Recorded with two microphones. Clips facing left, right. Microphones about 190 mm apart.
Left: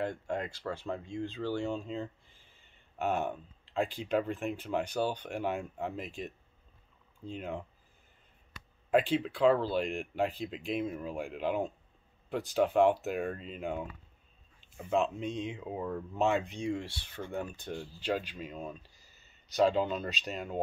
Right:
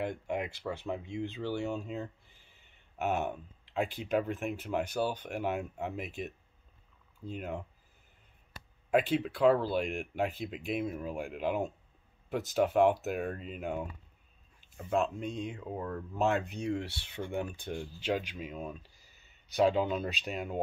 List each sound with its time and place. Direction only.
0.0 s speech: 15° right (ahead or behind)
1.5 s speech: 10° right (ahead or behind)
9.1 s speech: 5° right (ahead or behind)
18.8 s speech: 15° right (ahead or behind)